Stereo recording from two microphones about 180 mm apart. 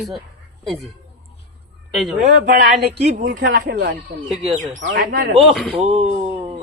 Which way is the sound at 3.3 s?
55° right (ahead or behind).